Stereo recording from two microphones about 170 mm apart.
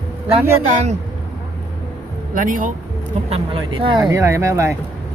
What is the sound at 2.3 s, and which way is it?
Speech, 50° right (ahead or behind).